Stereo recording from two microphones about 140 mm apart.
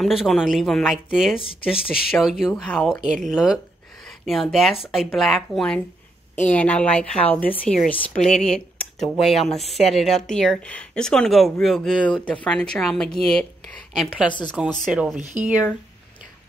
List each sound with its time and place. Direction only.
0.0 s a woman's voice: centre (ahead or behind)
1.4 s speech: 40° left (ahead or behind)
2.1 s a woman's voice: centre (ahead or behind)